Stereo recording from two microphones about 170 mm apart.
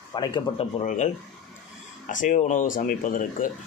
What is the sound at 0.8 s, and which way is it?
Speech, 45° left (ahead or behind).